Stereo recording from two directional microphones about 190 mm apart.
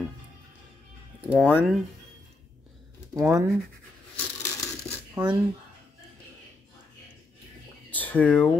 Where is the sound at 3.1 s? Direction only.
15° right (ahead or behind).